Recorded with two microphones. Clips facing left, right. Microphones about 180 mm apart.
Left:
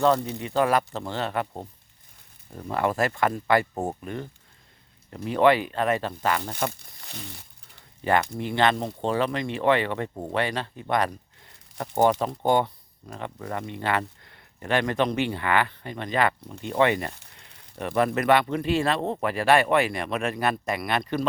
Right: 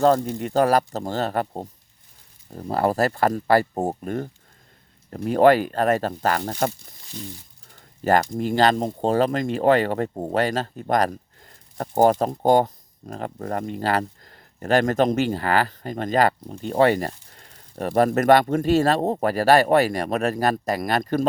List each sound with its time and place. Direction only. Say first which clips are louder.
0.0 s speech: right 4 dB; 45° right (ahead or behind)
6.7 s speech: right 5 dB; 65° left (ahead or behind)
7.8 s speech: right 4 dB; 40° right (ahead or behind)